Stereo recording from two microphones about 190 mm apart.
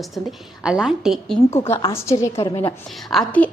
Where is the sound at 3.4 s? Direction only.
5° left (ahead or behind).